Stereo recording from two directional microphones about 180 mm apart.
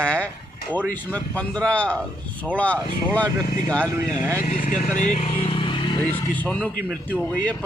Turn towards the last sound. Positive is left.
turn(degrees=5)  # may be behind; listen again after turning